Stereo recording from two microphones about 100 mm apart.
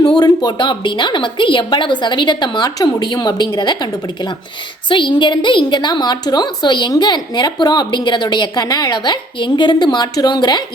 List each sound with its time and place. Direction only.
0.0 s a woman's voice: 45° left (ahead or behind)